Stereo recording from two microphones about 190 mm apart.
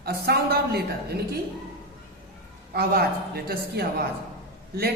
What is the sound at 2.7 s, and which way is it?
Speech, 55° right (ahead or behind).